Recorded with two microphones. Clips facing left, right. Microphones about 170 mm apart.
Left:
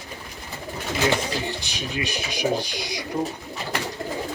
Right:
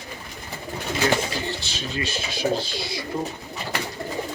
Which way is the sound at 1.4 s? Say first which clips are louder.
Even; 15° left (ahead or behind).